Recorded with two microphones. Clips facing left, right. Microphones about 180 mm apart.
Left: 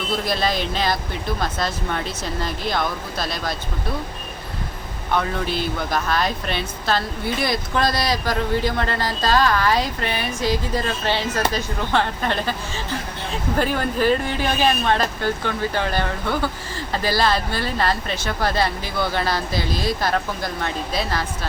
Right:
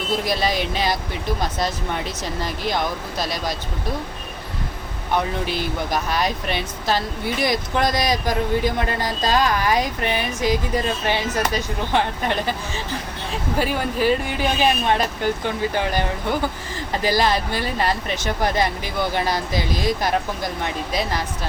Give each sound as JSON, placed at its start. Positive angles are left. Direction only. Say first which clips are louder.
{"t": 0.3, "sound": "speech", "louder": "even", "side_deg": -15}
{"t": 5.1, "sound": "speech", "louder": "even", "side_deg": -15}
{"t": 13.6, "sound": "speech", "louder": "left 1 dB", "side_deg": -10}